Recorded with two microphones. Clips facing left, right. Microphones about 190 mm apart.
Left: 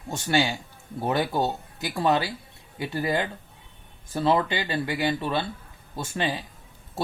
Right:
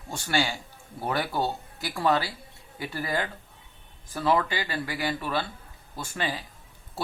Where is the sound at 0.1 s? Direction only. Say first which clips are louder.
Left 3 dB; 20° left (ahead or behind).